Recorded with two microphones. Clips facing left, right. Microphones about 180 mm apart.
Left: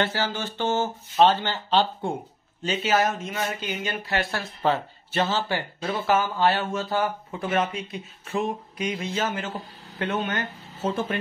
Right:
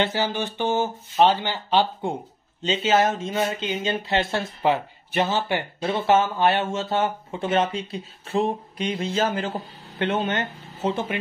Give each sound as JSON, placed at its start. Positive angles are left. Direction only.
{"t": 0.0, "sound": "speech", "side_deg": -15}
{"t": 2.6, "sound": "speech", "side_deg": -25}